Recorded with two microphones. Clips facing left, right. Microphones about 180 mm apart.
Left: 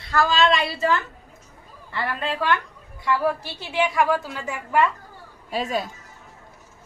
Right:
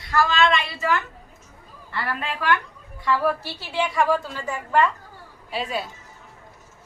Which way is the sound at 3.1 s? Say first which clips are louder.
Even; 15° left (ahead or behind).